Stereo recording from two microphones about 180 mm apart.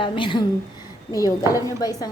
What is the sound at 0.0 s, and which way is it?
A woman's voice, 25° left (ahead or behind).